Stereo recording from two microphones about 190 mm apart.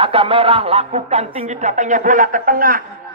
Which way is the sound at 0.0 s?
30° right (ahead or behind).